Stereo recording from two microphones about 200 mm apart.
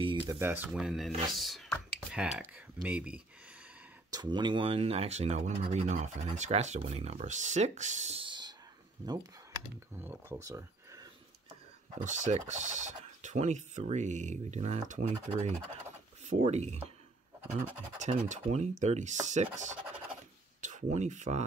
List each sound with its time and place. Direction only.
0.0 s a sound: 25° right (ahead or behind)
0.4 s speech: 10° right (ahead or behind)
4.1 s speech: 20° right (ahead or behind)
9.9 s speech: 10° right (ahead or behind)
12.0 s speech: 40° right (ahead or behind)
17.9 s speech: 35° right (ahead or behind)